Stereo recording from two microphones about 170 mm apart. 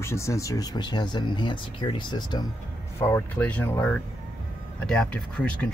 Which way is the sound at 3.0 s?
10° left (ahead or behind).